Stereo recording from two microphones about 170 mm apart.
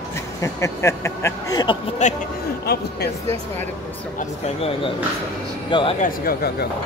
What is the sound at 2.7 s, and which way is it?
Speech, 70° left (ahead or behind).